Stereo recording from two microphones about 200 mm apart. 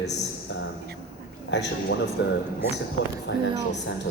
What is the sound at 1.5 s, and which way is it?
Speech, 60° left (ahead or behind).